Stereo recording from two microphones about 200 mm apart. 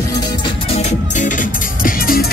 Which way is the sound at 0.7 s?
35° left (ahead or behind).